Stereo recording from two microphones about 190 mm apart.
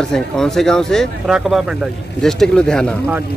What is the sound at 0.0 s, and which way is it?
Speech, 5° left (ahead or behind).